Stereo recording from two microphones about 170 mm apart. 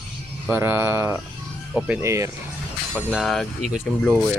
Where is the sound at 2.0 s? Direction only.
20° right (ahead or behind).